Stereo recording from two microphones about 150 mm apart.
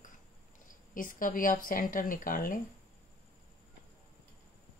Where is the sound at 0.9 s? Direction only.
65° left (ahead or behind).